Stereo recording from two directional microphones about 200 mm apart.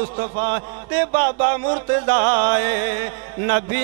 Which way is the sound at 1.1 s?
15° right (ahead or behind).